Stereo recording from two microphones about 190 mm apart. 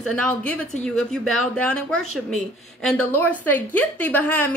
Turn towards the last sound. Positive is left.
turn(degrees=10)  # may be behind; listen again after turning